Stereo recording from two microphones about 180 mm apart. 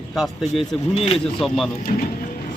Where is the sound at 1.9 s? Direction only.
50° left (ahead or behind).